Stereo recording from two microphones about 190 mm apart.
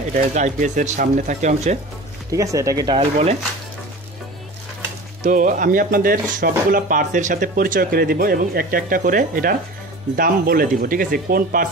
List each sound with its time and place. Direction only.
0.1 s speech: 40° right (ahead or behind)
2.3 s speech: 15° right (ahead or behind)
3.0 s speech: 35° right (ahead or behind)
5.2 s speech: 45° right (ahead or behind)